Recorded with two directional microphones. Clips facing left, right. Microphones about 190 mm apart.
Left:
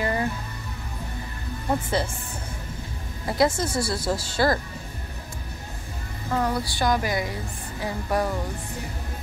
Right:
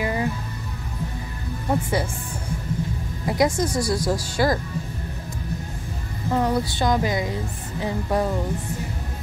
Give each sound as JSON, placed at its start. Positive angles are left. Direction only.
{"t": 0.0, "sound": "music", "side_deg": -10}
{"t": 1.7, "sound": "speech", "side_deg": -10}
{"t": 3.3, "sound": "speech", "side_deg": -15}
{"t": 6.3, "sound": "speech", "side_deg": -20}